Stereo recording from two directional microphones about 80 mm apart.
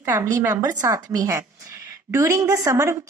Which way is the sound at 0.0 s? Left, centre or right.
Right.